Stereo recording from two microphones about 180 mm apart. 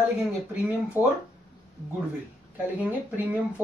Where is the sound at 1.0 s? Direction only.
10° right (ahead or behind).